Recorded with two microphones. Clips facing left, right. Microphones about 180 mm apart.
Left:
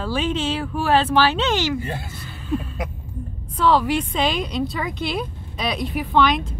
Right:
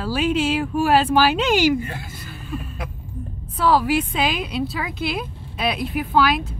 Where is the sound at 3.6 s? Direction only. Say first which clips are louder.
Even; 5° right (ahead or behind).